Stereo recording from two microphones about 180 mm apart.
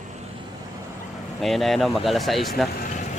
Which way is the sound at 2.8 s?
45° left (ahead or behind).